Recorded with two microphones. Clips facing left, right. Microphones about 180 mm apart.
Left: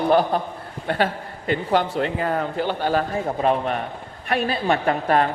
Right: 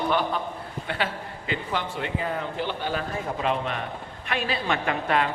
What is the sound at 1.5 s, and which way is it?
A man's voice, 40° left (ahead or behind).